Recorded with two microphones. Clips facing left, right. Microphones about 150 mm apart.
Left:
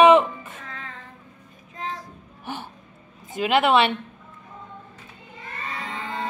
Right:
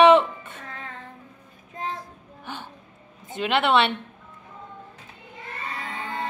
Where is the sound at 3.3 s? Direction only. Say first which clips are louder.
Left 2 dB; 5° left (ahead or behind).